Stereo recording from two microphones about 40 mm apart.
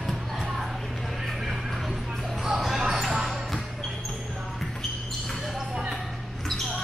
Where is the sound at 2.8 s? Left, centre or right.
Centre.